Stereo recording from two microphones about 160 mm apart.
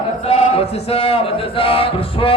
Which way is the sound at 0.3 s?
40° left (ahead or behind).